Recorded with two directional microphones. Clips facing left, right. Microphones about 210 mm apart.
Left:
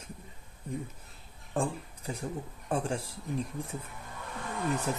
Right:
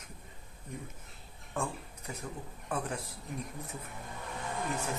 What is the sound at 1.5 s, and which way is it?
Speech, 30° left (ahead or behind).